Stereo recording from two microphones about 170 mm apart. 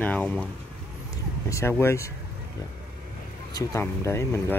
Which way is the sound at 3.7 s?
15° left (ahead or behind).